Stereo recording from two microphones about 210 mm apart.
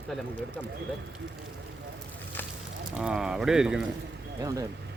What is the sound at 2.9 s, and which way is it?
Speech, 5° right (ahead or behind).